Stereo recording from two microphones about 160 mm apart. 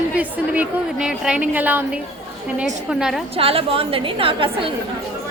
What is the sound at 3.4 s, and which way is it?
A woman's voice, 35° right (ahead or behind).